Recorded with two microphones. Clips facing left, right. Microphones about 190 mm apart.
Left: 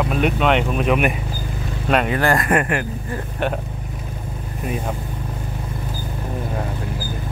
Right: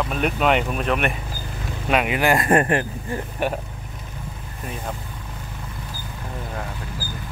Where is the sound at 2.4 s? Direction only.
30° right (ahead or behind).